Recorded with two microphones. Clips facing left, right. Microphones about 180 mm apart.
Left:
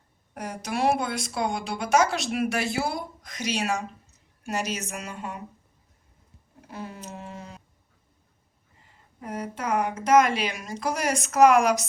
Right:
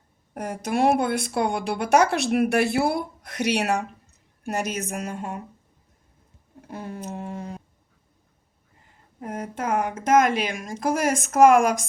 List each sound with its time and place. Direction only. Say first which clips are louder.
0.3 s speech: right 5 dB; 55° right (ahead or behind)
6.7 s a sound: right 4 dB; 50° right (ahead or behind)
9.2 s speech: right 2 dB; 50° right (ahead or behind)